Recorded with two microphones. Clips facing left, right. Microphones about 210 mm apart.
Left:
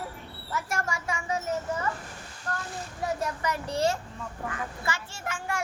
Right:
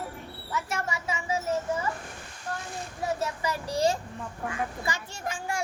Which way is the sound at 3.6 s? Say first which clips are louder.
Right 2 dB; 15° right (ahead or behind).